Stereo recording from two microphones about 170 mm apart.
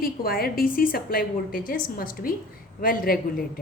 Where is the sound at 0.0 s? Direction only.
60° left (ahead or behind).